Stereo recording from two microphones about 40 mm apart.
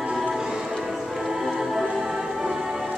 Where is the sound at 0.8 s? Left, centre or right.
Centre.